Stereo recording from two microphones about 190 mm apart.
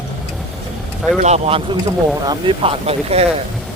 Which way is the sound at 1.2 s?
30° right (ahead or behind).